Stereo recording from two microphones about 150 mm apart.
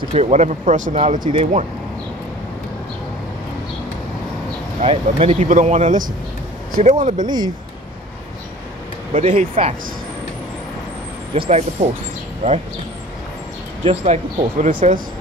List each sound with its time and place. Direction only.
0.1 s speech: 50° right (ahead or behind)
1.2 s speech: 35° right (ahead or behind)
4.8 s speech: 40° right (ahead or behind)
5.5 s speech: 55° right (ahead or behind)
7.2 s speech: 30° right (ahead or behind)
9.1 s speech: 50° right (ahead or behind)
11.3 s speech: 40° right (ahead or behind)
13.8 s speech: 50° right (ahead or behind)